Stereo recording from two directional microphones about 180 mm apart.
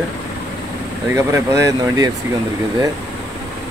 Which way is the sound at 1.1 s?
15° right (ahead or behind).